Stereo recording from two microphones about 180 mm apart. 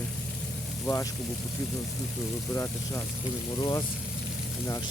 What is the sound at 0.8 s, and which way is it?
Speech, 15° left (ahead or behind).